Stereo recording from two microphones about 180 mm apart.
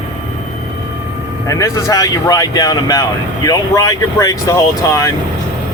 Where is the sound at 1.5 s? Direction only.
20° left (ahead or behind).